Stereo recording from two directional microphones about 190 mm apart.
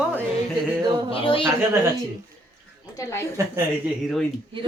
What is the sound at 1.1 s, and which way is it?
Speech, 30° left (ahead or behind).